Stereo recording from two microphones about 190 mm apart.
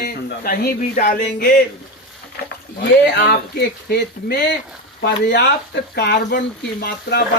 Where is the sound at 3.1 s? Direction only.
60° left (ahead or behind).